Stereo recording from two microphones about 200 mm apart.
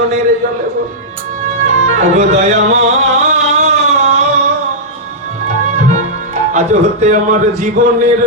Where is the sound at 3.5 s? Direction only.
35° right (ahead or behind).